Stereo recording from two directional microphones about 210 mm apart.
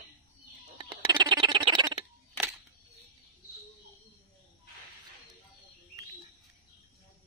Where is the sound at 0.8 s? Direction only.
20° right (ahead or behind).